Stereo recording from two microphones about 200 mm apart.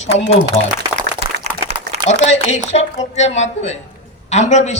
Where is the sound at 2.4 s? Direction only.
35° left (ahead or behind).